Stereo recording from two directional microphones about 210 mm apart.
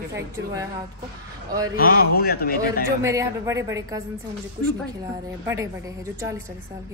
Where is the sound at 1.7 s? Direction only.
45° left (ahead or behind).